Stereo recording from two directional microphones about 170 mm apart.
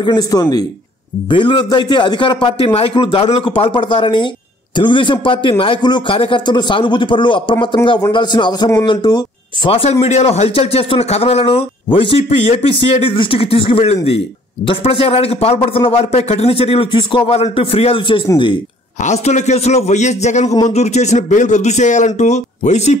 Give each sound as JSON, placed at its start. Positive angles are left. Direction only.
{"t": 0.0, "sound": "speech", "side_deg": 25}
{"t": 19.0, "sound": "speech", "side_deg": 45}